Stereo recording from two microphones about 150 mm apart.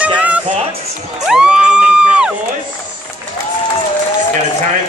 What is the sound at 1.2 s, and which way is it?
Crowd, 5° right (ahead or behind).